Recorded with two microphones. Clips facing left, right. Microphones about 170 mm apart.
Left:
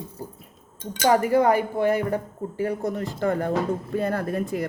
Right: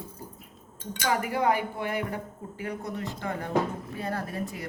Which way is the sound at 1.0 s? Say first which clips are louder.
Left 7 dB; 40° left (ahead or behind).